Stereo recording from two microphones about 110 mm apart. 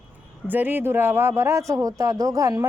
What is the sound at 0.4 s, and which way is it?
A man's voice, 15° right (ahead or behind).